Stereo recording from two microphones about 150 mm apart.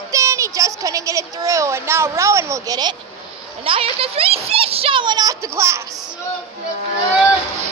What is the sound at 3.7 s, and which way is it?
A child's voice, 40° right (ahead or behind).